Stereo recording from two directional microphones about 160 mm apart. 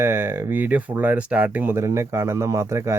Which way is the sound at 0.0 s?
15° right (ahead or behind).